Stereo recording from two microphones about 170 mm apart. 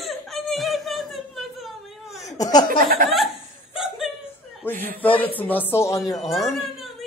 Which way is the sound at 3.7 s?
Centre (ahead or behind).